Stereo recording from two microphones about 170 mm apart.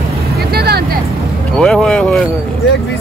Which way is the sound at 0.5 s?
70° right (ahead or behind).